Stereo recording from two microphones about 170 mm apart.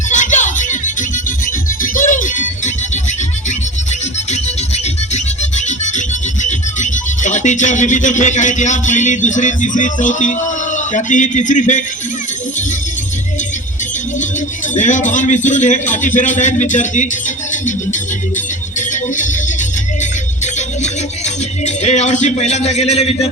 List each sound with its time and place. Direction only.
0.1 s music: 45° left (ahead or behind)
1.8 s music: 50° left (ahead or behind)
4.3 s music: 40° left (ahead or behind)
6.4 s speech: 45° left (ahead or behind)
14.8 s a man's voice: 45° left (ahead or behind)
20.4 s music: 45° left (ahead or behind)
21.6 s a man's voice: 40° left (ahead or behind)